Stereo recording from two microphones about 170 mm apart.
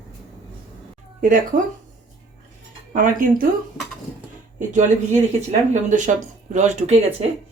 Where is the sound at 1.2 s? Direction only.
50° right (ahead or behind).